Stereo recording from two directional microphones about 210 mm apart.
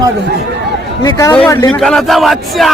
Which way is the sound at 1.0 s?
15° left (ahead or behind).